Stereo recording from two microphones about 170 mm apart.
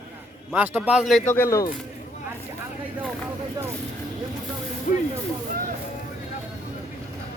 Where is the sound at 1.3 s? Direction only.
15° left (ahead or behind).